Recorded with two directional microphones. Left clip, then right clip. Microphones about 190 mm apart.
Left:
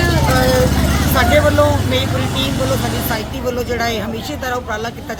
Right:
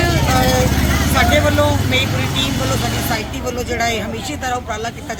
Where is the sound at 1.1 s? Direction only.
10° left (ahead or behind).